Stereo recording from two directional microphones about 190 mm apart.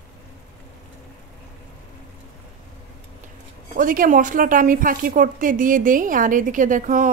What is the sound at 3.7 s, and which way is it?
Speech, 45° right (ahead or behind).